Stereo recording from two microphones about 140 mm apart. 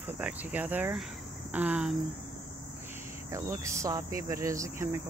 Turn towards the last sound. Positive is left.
turn(degrees=-20)  # may be behind; listen again after turning